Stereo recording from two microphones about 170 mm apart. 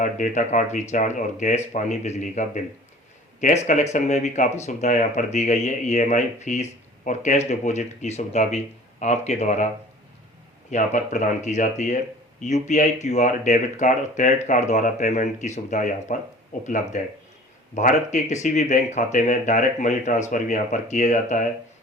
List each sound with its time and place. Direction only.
0.0 s speech: 50° left (ahead or behind)
10.7 s speech: 45° left (ahead or behind)